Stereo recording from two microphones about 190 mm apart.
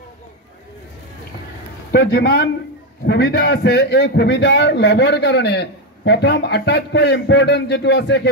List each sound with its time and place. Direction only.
1.9 s a man's voice: 55° left (ahead or behind)